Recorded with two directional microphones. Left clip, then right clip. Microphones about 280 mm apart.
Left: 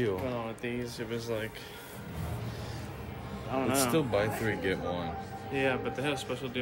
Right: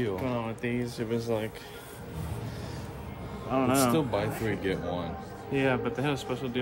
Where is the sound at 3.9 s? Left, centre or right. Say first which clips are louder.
Even; centre.